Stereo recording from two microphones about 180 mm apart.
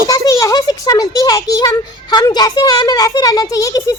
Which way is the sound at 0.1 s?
20° left (ahead or behind).